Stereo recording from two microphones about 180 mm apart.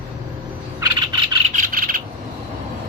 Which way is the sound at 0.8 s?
25° right (ahead or behind).